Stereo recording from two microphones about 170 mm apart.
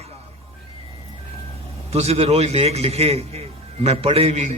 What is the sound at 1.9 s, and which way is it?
A man's voice, 35° right (ahead or behind).